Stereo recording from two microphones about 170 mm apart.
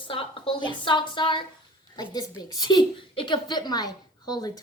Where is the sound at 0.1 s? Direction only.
30° left (ahead or behind).